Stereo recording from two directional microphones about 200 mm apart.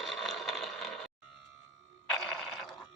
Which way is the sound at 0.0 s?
Centre (ahead or behind).